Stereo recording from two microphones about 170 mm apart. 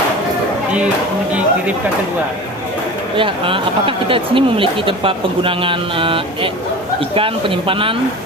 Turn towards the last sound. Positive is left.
turn(degrees=-30)  # may be behind; listen again after turning